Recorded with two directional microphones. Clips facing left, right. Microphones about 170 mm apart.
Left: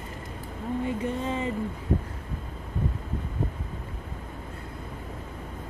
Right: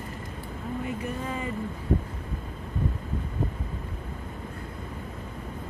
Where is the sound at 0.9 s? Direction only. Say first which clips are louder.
Left 3 dB; 25° left (ahead or behind).